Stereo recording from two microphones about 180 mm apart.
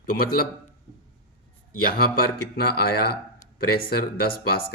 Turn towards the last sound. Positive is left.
turn(degrees=60)  # may be behind; listen again after turning